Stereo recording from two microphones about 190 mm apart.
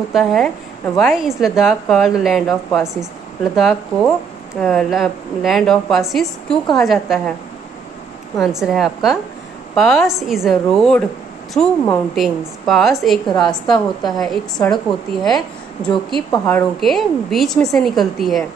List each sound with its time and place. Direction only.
0.1 s a woman's voice: centre (ahead or behind)
8.4 s a woman's voice: centre (ahead or behind)